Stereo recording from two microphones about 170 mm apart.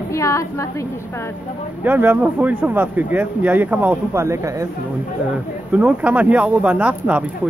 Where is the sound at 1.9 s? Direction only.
10° right (ahead or behind).